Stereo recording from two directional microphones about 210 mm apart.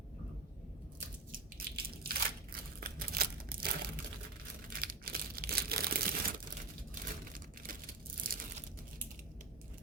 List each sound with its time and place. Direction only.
1.3 s crunch: 45° right (ahead or behind)
2.8 s crumpling: 45° right (ahead or behind)
4.7 s a sound: 45° right (ahead or behind)